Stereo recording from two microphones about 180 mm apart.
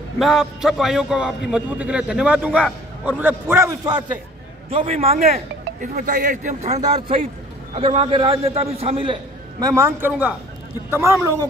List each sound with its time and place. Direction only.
0.2 s music: centre (ahead or behind)
1.5 s a man's voice: 5° right (ahead or behind)
4.6 s a man's voice: 35° right (ahead or behind); by 11.1 s 15° right (ahead or behind)